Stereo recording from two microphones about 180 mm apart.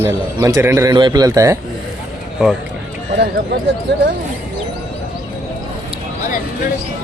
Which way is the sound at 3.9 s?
70° right (ahead or behind).